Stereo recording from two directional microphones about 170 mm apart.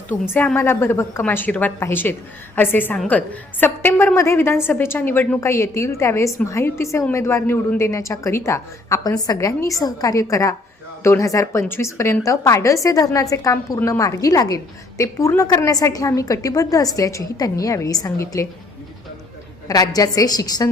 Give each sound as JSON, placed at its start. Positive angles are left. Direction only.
{"t": 0.1, "sound": "a woman's voice", "side_deg": 10}
{"t": 19.6, "sound": "a woman's voice", "side_deg": 20}